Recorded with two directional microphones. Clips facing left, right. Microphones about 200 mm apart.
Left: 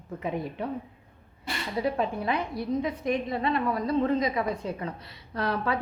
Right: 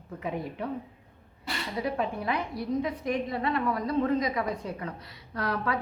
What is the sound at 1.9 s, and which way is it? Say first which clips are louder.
A woman's voice: left 2 dB; 25° left (ahead or behind).